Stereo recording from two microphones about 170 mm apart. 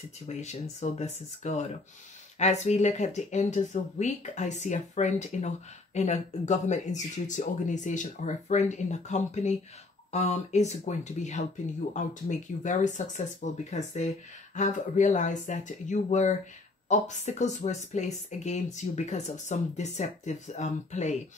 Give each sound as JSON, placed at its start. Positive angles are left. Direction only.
{"t": 0.3, "sound": "speech", "side_deg": 40}